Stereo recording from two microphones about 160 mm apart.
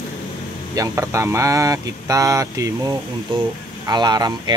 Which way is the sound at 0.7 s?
20° right (ahead or behind).